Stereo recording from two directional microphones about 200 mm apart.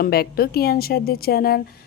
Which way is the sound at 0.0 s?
50° left (ahead or behind).